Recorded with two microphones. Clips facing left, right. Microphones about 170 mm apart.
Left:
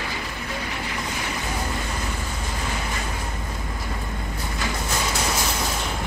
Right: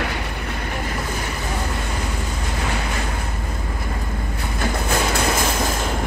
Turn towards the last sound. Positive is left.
turn(degrees=-55)  # may be behind; listen again after turning